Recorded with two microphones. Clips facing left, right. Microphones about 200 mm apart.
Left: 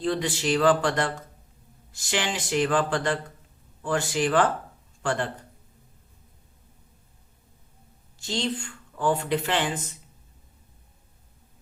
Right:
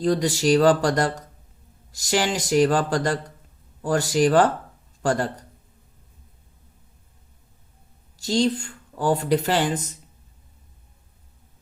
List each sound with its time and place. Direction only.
0.0 s speech: 40° right (ahead or behind)
8.2 s speech: 40° right (ahead or behind)